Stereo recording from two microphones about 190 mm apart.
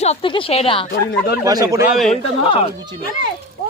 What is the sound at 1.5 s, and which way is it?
Speech, 20° right (ahead or behind).